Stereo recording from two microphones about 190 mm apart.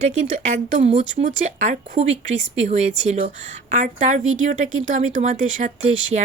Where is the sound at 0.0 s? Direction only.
40° right (ahead or behind).